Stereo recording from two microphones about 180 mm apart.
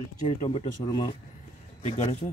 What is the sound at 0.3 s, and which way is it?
Speech, 35° left (ahead or behind).